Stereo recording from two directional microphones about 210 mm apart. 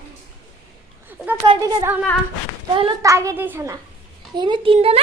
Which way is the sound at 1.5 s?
20° right (ahead or behind).